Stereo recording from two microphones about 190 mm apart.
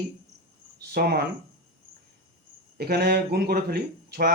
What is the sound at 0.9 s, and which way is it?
Speech, 55° right (ahead or behind).